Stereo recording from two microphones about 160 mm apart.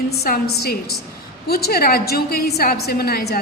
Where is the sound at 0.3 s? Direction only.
80° left.